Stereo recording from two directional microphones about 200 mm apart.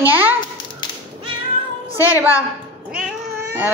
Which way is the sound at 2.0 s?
10° right (ahead or behind).